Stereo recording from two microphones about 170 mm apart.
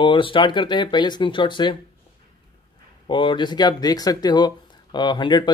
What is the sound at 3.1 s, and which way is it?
Speech, 30° left (ahead or behind).